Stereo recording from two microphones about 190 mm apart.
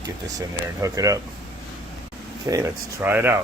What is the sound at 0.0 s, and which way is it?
Speech, 20° right (ahead or behind).